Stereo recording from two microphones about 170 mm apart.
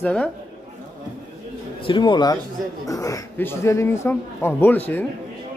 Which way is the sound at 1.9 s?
25° left (ahead or behind).